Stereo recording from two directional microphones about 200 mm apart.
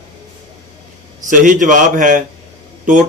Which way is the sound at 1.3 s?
40° right (ahead or behind).